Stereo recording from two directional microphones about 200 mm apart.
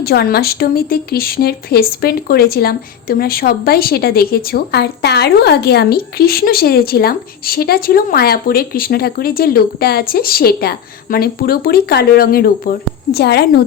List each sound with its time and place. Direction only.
0.0 s a woman's voice: 50° left (ahead or behind)